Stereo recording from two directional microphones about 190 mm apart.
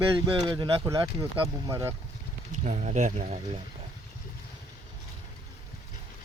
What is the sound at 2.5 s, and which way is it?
Speech, 40° right (ahead or behind).